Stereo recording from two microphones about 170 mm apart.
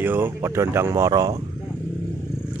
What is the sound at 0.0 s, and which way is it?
Speech, 10° right (ahead or behind).